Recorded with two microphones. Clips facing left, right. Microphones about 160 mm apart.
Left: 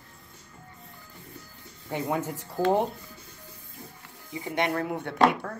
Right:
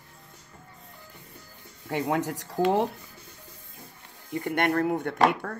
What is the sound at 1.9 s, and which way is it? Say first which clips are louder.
Speech: right 2 dB; 85° right.